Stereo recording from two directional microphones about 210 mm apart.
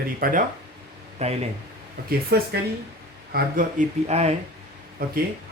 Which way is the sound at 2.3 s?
50° right (ahead or behind).